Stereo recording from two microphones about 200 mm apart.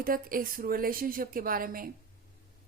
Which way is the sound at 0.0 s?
45° right (ahead or behind).